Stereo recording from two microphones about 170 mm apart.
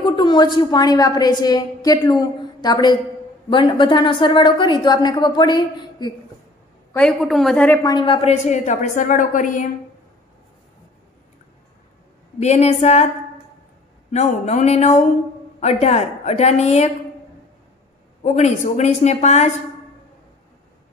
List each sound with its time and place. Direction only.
0.0 s a woman's voice: 25° left (ahead or behind)
7.0 s a woman's voice: centre (ahead or behind)
7.8 s a woman's voice: 25° left (ahead or behind); by 9.7 s 50° left (ahead or behind)
12.4 s a woman's voice: 40° left (ahead or behind)
14.1 s a woman's voice: 40° left (ahead or behind)
18.2 s a woman's voice: 45° left (ahead or behind)